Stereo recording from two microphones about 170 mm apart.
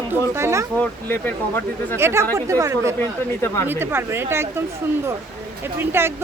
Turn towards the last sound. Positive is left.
turn(degrees=-15)  # may be behind; listen again after turning